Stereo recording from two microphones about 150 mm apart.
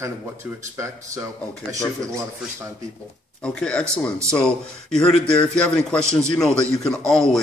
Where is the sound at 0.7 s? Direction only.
20° right (ahead or behind).